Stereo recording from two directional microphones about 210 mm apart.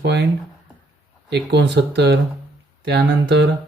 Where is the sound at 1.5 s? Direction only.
55° right (ahead or behind).